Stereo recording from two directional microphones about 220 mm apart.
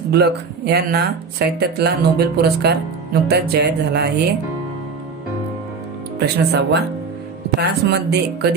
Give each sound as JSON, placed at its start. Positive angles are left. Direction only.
{"t": 0.1, "sound": "speech", "side_deg": -45}
{"t": 6.1, "sound": "speech", "side_deg": -50}